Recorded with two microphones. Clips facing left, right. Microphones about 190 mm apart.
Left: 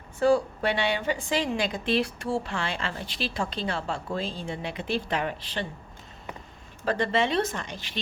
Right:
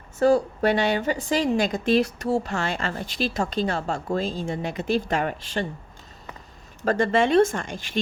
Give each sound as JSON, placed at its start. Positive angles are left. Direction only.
{"t": 0.2, "sound": "a woman's voice", "side_deg": -40}
{"t": 6.8, "sound": "a woman's voice", "side_deg": -45}